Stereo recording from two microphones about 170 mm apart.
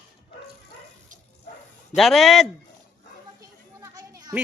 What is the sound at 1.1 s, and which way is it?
Dog, 45° right (ahead or behind).